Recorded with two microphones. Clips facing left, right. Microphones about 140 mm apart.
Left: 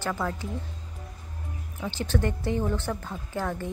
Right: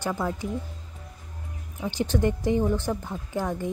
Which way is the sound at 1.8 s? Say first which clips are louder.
Right 3 dB; 15° right (ahead or behind).